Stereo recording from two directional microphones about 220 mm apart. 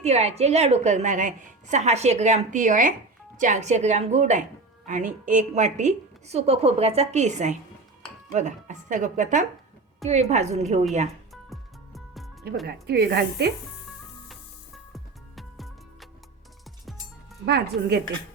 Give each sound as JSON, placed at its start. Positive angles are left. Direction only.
{"t": 0.0, "sound": "a woman's voice", "side_deg": -30}
{"t": 11.4, "sound": "music", "side_deg": 0}
{"t": 12.6, "sound": "speech", "side_deg": -45}
{"t": 14.9, "sound": "music", "side_deg": 0}
{"t": 17.4, "sound": "speech", "side_deg": -50}